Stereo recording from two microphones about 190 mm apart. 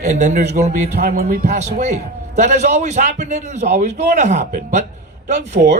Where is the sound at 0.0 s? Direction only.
40° right (ahead or behind).